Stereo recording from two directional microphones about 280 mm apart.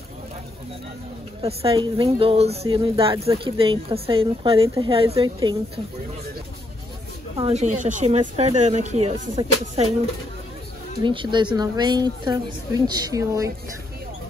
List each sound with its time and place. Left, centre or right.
1.4 s speech: centre
7.3 s speech: right
11.0 s a woman's voice: centre